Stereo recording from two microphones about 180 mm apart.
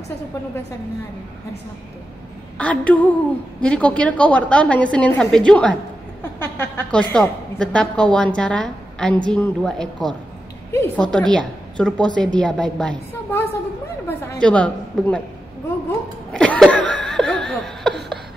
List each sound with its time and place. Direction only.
2.5 s a woman's voice: 5° left (ahead or behind)
10.7 s a woman's voice: 15° left (ahead or behind)
16.3 s a woman's voice: 5° left (ahead or behind)
17.0 s laughter: 5° left (ahead or behind)